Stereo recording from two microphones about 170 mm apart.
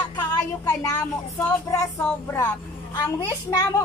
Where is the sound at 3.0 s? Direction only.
20° left (ahead or behind).